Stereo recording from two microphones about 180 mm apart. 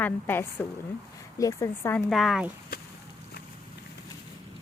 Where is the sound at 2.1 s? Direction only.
Centre (ahead or behind).